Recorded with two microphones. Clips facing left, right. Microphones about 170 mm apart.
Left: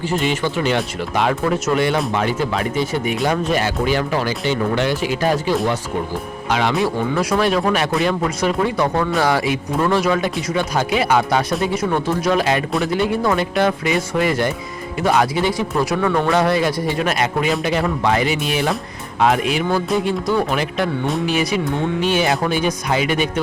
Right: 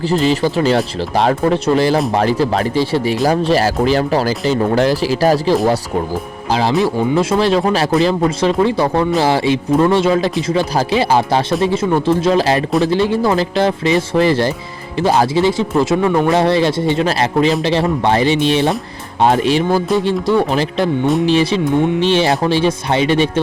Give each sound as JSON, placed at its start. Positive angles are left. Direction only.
{"t": 0.1, "sound": "speech", "side_deg": -35}
{"t": 16.3, "sound": "speech", "side_deg": -30}